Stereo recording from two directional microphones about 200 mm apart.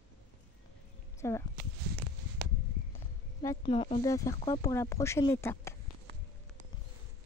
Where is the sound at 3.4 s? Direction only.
25° left (ahead or behind).